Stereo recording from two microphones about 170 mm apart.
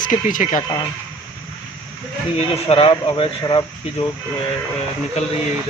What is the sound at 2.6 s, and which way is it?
Speech, 35° left (ahead or behind).